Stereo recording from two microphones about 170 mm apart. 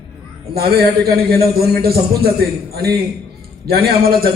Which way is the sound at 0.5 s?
65° right (ahead or behind).